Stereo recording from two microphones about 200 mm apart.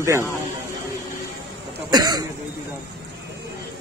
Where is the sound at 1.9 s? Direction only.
20° right (ahead or behind).